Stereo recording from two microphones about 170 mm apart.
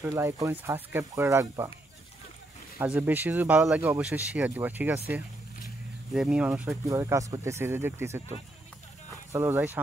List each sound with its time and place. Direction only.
0.0 s speech: 20° right (ahead or behind)
2.8 s speech: 10° right (ahead or behind)
6.1 s speech: 5° right (ahead or behind)
6.7 s speech: 20° right (ahead or behind)